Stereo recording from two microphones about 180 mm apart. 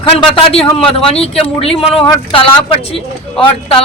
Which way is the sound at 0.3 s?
30° left (ahead or behind).